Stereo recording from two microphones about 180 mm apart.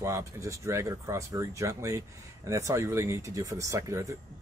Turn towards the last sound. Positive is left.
turn(degrees=-15)  # may be behind; listen again after turning